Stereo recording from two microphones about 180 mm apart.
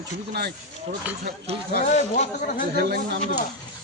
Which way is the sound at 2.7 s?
60° right (ahead or behind).